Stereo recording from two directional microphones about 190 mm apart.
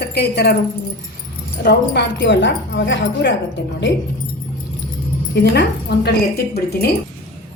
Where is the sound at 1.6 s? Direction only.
60° left (ahead or behind).